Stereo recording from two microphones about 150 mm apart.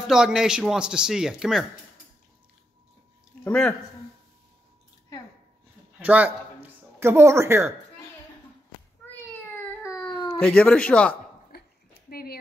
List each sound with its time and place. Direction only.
0.0 s a man's voice: 5° right (ahead or behind)
3.4 s speech: 10° left (ahead or behind)
5.9 s a sound: 10° right (ahead or behind)
10.1 s cat: 25° left (ahead or behind)
10.4 s speech: 10° left (ahead or behind)
12.1 s a sound: 90° left